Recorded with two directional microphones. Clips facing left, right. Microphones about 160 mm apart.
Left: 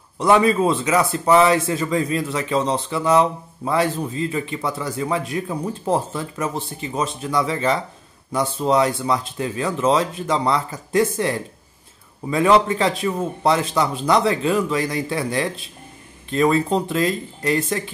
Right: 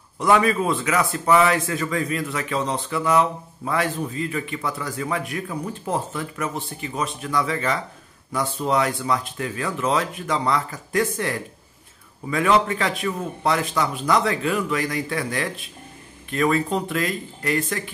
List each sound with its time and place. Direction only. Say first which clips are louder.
0.2 s speech: left 3 dB; 25° left (ahead or behind)